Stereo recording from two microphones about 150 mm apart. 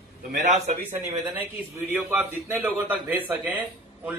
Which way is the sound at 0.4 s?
55° right (ahead or behind).